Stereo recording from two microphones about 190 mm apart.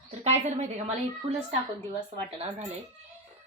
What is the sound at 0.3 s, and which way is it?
Speech, 35° right (ahead or behind).